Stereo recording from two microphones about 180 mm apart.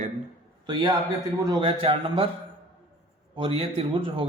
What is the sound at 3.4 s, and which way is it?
Speech, 30° right (ahead or behind).